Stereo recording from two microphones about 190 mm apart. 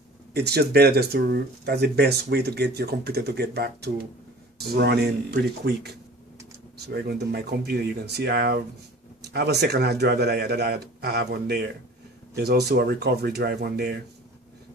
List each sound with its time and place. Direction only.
0.3 s speech: 60° right (ahead or behind)